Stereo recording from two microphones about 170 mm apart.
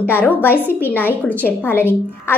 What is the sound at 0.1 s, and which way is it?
A woman's voice, 10° left (ahead or behind).